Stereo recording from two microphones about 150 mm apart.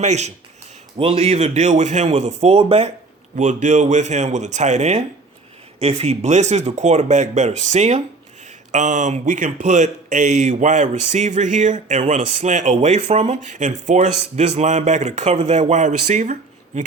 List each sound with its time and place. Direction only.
0.0 s speech: 50° right (ahead or behind)
0.9 s speech: 40° right (ahead or behind)
3.3 s speech: 55° right (ahead or behind)